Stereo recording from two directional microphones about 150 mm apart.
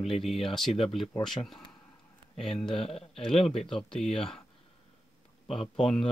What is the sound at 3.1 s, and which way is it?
Speech, centre (ahead or behind).